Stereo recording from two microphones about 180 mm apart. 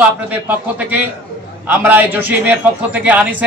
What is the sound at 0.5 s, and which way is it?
A man's voice, 10° right (ahead or behind).